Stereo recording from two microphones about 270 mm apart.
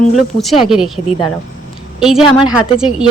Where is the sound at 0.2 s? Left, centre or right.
Centre.